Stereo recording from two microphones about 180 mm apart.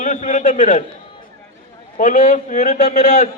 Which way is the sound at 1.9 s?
50° left (ahead or behind).